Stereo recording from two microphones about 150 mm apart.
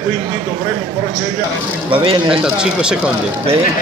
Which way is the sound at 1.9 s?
35° right (ahead or behind).